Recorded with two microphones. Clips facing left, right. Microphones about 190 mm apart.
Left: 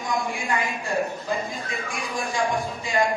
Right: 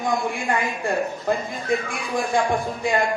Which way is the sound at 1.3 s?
55° right (ahead or behind).